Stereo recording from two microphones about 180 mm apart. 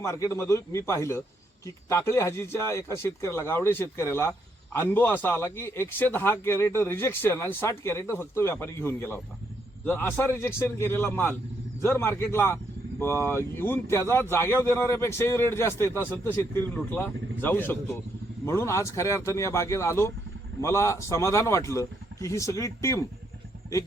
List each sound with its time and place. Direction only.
0.0 s a man's voice: 15° left (ahead or behind)